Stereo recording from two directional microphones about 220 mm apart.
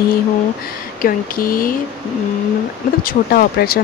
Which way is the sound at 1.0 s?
40° left (ahead or behind).